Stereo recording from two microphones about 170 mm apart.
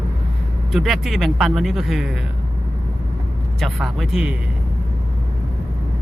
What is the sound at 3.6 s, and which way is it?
Speech, centre (ahead or behind).